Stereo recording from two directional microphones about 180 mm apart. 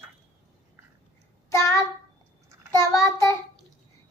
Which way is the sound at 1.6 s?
15° left (ahead or behind).